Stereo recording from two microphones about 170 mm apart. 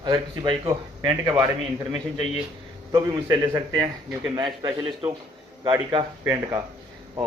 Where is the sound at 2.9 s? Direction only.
20° right (ahead or behind).